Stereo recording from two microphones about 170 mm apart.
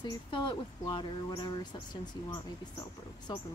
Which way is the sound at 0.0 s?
25° left (ahead or behind).